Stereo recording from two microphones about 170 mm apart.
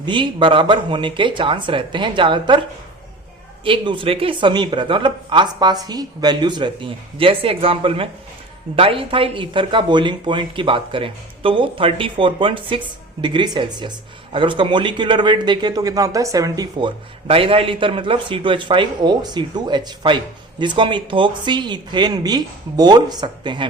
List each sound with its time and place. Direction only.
0.0 s a man's voice: 30° right (ahead or behind)
3.6 s a man's voice: 30° right (ahead or behind)